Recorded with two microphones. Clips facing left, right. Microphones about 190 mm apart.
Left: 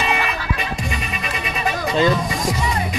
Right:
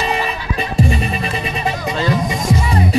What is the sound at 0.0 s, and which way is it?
Music, 35° right (ahead or behind).